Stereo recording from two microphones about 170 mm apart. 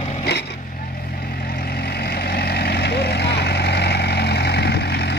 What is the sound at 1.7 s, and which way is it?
Vehicle, 70° left (ahead or behind).